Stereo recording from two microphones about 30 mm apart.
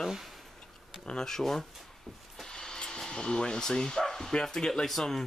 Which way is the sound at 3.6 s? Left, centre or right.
Left.